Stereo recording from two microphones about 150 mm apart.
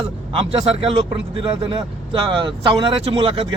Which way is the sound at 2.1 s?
35° right (ahead or behind).